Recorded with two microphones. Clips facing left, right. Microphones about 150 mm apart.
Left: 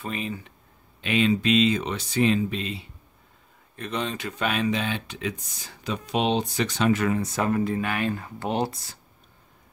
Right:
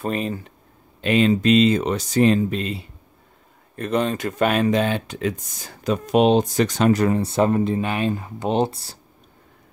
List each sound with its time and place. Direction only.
0.0 s speech: 45° right (ahead or behind)